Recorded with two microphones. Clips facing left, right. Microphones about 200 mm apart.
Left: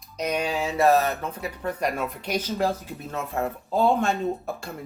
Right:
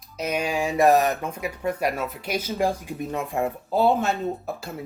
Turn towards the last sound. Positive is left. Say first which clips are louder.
# right 1 dB
turn(degrees=-5)  # may be behind; listen again after turning